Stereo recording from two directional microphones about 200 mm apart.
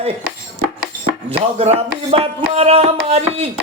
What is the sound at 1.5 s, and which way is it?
Speech, 30° right (ahead or behind).